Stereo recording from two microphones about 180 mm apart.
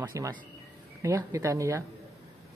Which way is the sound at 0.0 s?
20° right (ahead or behind).